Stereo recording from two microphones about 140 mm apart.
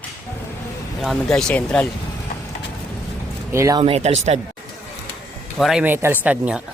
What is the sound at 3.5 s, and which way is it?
Speech, 25° right (ahead or behind).